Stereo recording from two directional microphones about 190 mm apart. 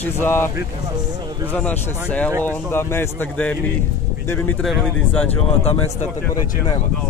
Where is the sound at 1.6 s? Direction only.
10° left (ahead or behind).